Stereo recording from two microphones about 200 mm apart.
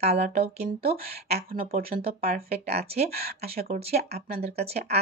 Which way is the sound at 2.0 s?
30° right (ahead or behind).